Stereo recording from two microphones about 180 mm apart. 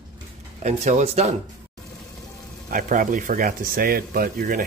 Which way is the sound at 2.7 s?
45° right (ahead or behind).